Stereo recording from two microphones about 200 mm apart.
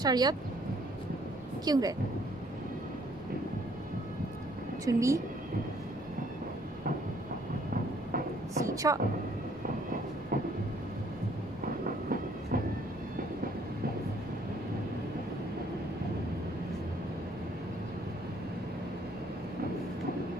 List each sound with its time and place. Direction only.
0.0 s speech: 20° right (ahead or behind)
1.6 s speech: 20° right (ahead or behind)
4.8 s speech: 15° right (ahead or behind)
8.6 s speech: 15° right (ahead or behind)
10.3 s vehicle: 50° right (ahead or behind)
11.6 s train: 45° right (ahead or behind)